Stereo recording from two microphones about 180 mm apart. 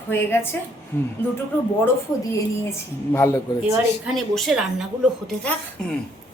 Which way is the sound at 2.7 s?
15° left (ahead or behind).